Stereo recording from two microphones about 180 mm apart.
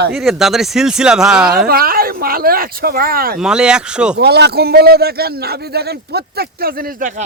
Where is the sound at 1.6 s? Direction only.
55° right (ahead or behind).